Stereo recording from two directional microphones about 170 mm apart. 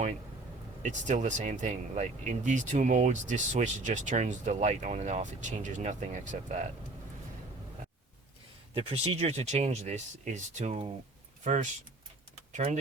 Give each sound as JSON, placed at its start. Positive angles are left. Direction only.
{"t": 0.8, "sound": "speech", "side_deg": -45}
{"t": 8.7, "sound": "speech", "side_deg": -35}